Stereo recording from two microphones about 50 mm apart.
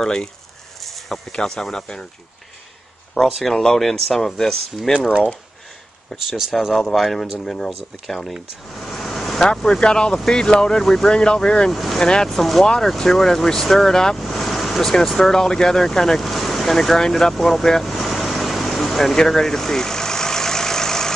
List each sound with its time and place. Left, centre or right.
0.0 s speech: centre
0.7 s a sound: centre
1.3 s speech: centre
3.4 s speech: centre
6.8 s speech: centre
11.7 s speech: centre
12.0 s speech: centre
14.1 s vehicle: centre
15.1 s speech: centre